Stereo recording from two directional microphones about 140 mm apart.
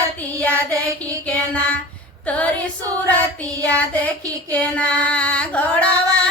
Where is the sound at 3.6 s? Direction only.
10° left (ahead or behind).